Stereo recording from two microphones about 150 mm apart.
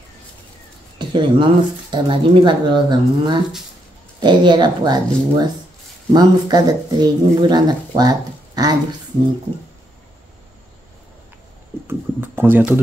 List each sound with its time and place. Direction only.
0.9 s speech: 35° right (ahead or behind)
11.9 s speech: 15° right (ahead or behind)